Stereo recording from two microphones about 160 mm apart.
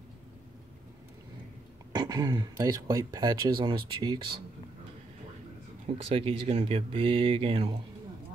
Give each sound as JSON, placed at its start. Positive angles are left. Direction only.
{"t": 1.9, "sound": "speech", "side_deg": -25}
{"t": 5.9, "sound": "speech", "side_deg": -35}